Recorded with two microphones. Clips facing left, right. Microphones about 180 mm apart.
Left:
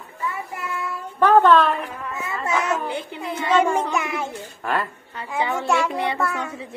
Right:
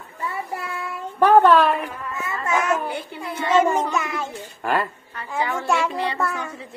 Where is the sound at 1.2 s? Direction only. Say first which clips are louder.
Right 1 dB; 10° right (ahead or behind).